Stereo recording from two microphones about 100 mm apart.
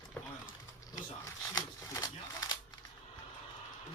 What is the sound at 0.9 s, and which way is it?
Shuffling cards, 35° left (ahead or behind).